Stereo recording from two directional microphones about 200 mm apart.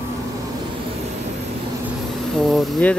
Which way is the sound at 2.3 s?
Centre (ahead or behind).